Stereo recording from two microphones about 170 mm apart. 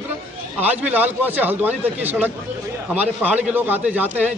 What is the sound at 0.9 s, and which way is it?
A man's voice, 10° right (ahead or behind).